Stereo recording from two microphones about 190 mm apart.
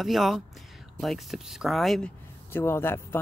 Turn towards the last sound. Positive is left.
turn(degrees=10)  # may be behind; listen again after turning